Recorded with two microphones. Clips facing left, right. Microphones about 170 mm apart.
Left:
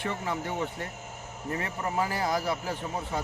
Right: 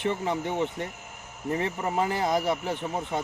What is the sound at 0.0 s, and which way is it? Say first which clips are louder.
Speech: right 4 dB; 20° right (ahead or behind).